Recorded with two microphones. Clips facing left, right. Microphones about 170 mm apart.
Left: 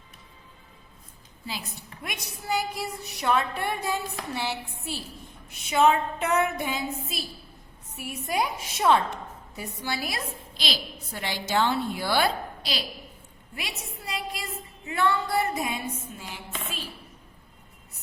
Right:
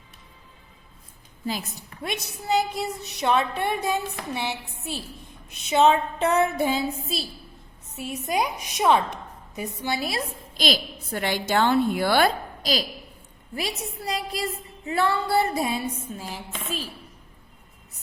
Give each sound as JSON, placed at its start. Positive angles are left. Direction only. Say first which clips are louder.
{"t": 2.0, "sound": "a woman's voice", "louder": "right 7 dB", "side_deg": -25}
{"t": 10.6, "sound": "a woman's voice", "louder": "right 8 dB", "side_deg": -50}
{"t": 13.6, "sound": "music", "louder": "right 8 dB", "side_deg": -35}